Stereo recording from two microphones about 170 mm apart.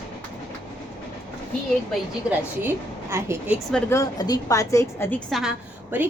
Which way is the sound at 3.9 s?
20° left (ahead or behind).